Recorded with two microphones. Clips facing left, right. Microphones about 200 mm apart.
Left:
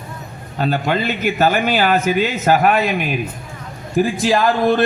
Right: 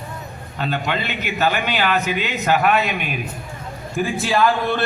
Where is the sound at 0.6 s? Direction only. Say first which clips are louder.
Left 5 dB; 40° left (ahead or behind).